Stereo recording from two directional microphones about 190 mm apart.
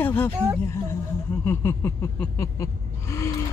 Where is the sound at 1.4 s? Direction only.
10° left (ahead or behind).